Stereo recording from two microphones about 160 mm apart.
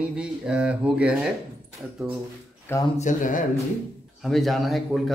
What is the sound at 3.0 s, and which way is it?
Speech, 55° left (ahead or behind).